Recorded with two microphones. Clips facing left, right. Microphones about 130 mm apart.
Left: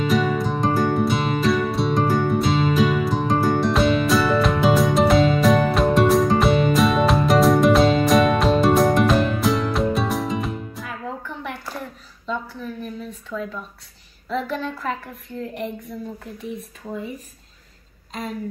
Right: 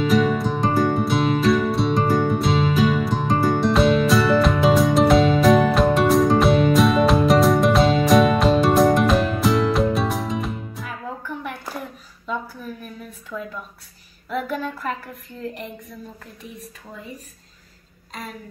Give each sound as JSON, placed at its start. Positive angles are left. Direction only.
{"t": 0.0, "sound": "music", "side_deg": 0}
{"t": 12.8, "sound": "a sound", "side_deg": -5}
{"t": 14.3, "sound": "speech", "side_deg": -5}